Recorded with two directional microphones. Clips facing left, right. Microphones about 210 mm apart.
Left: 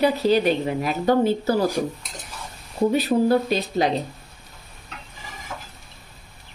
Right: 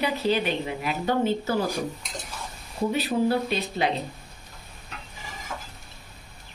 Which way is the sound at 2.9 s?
40° left (ahead or behind).